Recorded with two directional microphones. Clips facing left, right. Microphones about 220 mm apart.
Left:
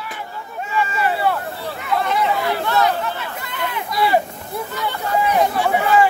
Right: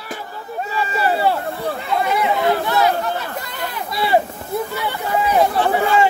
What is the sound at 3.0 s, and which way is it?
Chatter, 40° right (ahead or behind).